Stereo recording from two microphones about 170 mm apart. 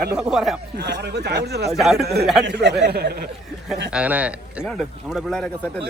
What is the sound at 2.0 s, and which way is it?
Speech, 70° right (ahead or behind).